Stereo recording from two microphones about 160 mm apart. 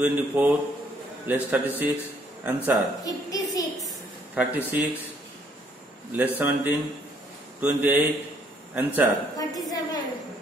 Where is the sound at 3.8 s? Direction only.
10° right (ahead or behind).